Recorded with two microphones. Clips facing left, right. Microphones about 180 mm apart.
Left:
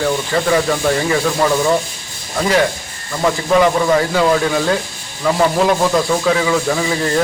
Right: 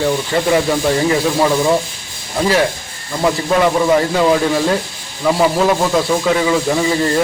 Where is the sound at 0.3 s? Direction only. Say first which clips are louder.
Even; 25° right (ahead or behind).